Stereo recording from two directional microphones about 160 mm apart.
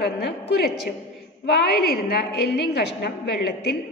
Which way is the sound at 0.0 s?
90° left.